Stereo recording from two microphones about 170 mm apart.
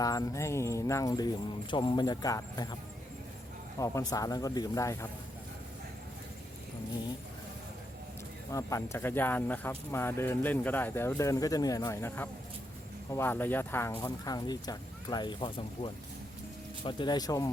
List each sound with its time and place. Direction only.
0.0 s speech: 20° left (ahead or behind)
3.8 s speech: 20° left (ahead or behind)
8.5 s speech: 15° left (ahead or behind)